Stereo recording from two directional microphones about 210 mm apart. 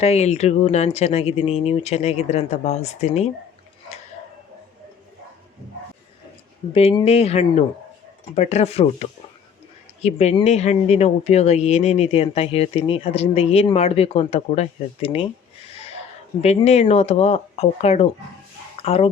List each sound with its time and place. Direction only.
0.0 s speech: 30° left (ahead or behind)
6.7 s speech: 30° left (ahead or behind)
16.4 s speech: 30° left (ahead or behind)